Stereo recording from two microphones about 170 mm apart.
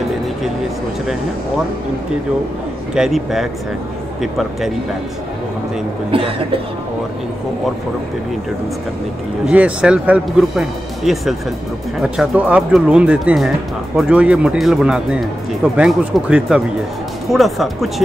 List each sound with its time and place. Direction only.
2.9 s speech: 5° right (ahead or behind)
6.1 s speech: 35° right (ahead or behind)
9.5 s speech: 5° right (ahead or behind)